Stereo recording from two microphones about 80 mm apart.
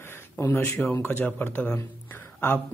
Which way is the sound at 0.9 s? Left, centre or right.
Left.